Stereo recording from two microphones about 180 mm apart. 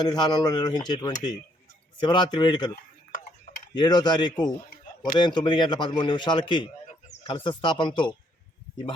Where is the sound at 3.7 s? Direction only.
25° left (ahead or behind).